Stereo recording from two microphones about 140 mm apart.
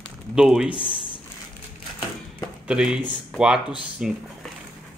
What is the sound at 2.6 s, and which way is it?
Speech, 5° right (ahead or behind).